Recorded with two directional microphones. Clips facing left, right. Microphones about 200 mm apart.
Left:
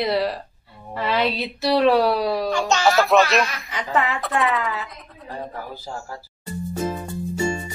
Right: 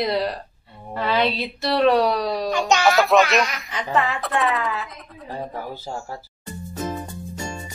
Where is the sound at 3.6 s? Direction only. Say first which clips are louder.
Even; centre (ahead or behind).